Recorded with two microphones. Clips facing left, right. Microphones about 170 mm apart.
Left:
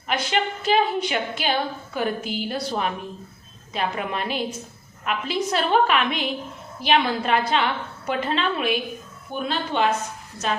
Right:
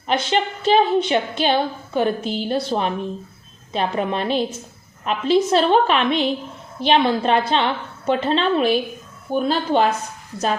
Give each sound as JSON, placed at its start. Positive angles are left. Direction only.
{"t": 0.1, "sound": "a woman's voice", "side_deg": -30}